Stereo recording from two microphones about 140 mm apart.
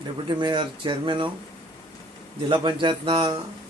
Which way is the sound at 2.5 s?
35° right (ahead or behind).